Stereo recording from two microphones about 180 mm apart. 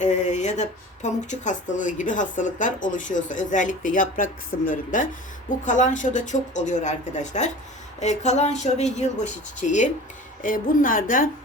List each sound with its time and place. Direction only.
0.0 s speech: 40° left (ahead or behind)